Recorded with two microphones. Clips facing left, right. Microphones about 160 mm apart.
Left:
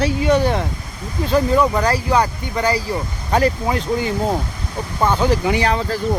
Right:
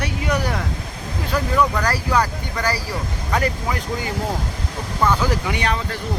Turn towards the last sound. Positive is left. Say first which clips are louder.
# left 5 dB
turn(degrees=35)  # may be behind; listen again after turning